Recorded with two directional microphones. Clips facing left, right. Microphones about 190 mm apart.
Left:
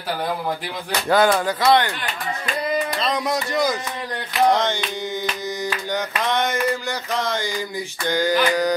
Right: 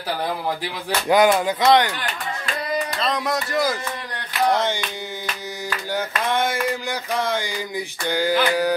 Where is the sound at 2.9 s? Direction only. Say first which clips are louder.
Left 1 dB; centre (ahead or behind).